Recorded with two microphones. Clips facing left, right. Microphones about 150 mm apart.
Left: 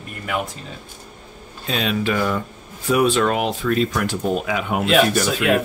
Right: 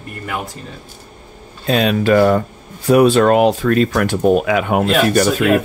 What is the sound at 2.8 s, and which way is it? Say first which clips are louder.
Speech: right 7 dB; 40° right (ahead or behind).